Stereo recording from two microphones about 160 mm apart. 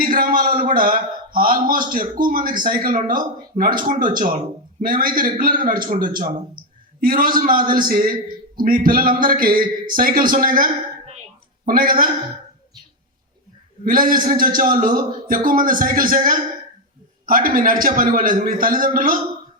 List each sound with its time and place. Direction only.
0.0 s a sound: 65° right (ahead or behind)
0.7 s a man's voice: 65° right (ahead or behind)
13.8 s a man's voice: 60° right (ahead or behind)